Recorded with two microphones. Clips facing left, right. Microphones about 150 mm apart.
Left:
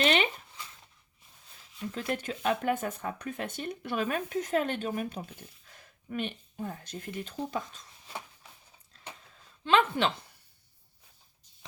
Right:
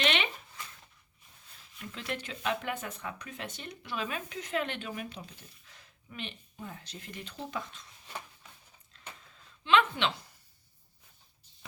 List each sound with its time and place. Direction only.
0.0 s zipper: 40° left (ahead or behind)
1.9 s speech: 45° left (ahead or behind)
9.6 s speech: 40° left (ahead or behind)